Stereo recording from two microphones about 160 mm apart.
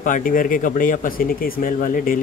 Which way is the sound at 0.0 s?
55° left (ahead or behind).